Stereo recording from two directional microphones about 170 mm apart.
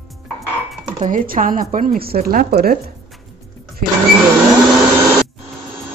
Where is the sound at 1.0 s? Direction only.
50° right (ahead or behind).